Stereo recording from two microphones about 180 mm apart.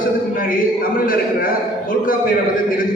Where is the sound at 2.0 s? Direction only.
50° left (ahead or behind).